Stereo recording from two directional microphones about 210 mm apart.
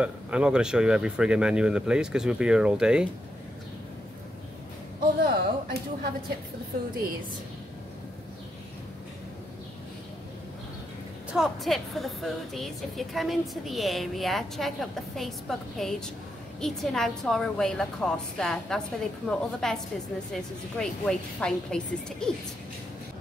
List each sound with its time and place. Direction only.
0.0 s a woman's voice: 5° right (ahead or behind)
5.0 s a sound: 45° right (ahead or behind)
11.3 s a woman's voice: centre (ahead or behind)